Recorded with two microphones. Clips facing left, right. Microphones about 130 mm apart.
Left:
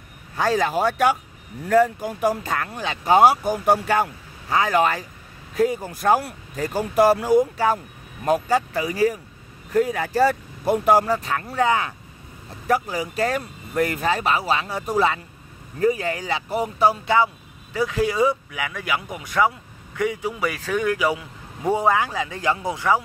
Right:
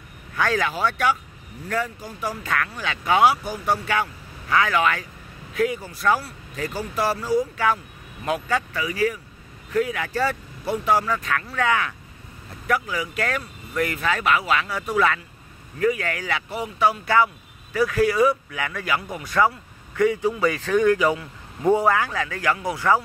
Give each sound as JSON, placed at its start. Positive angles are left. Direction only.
{"t": 0.4, "sound": "speech", "side_deg": 35}
{"t": 0.7, "sound": "speech", "side_deg": 45}
{"t": 2.4, "sound": "speech", "side_deg": 30}
{"t": 5.9, "sound": "speech", "side_deg": 50}
{"t": 7.5, "sound": "speech", "side_deg": 35}
{"t": 11.1, "sound": "speech", "side_deg": 30}
{"t": 16.4, "sound": "speech", "side_deg": 40}
{"t": 17.0, "sound": "speech", "side_deg": 25}